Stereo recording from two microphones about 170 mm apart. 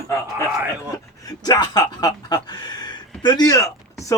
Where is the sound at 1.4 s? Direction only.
25° left (ahead or behind).